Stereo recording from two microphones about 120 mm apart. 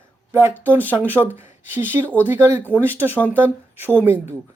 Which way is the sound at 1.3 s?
20° right (ahead or behind).